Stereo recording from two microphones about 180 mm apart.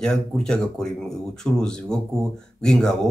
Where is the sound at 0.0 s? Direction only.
5° left (ahead or behind).